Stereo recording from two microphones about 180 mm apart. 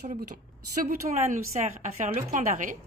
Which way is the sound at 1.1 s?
40° right (ahead or behind).